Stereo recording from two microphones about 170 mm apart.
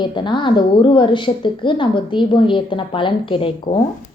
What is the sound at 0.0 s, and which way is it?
A woman's voice, 30° left (ahead or behind).